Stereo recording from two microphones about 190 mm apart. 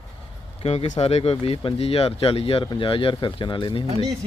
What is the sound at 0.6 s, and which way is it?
Speech, 35° left (ahead or behind).